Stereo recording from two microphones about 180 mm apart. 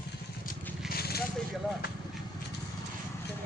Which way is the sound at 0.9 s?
60° left (ahead or behind).